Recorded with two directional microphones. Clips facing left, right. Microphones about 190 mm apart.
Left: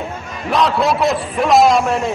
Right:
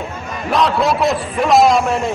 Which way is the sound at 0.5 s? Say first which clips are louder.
Even; centre (ahead or behind).